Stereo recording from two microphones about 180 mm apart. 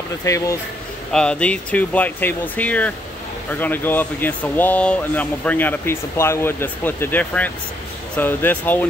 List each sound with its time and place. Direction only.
0.2 s speech: 15° left (ahead or behind)
1.1 s speech: 5° left (ahead or behind)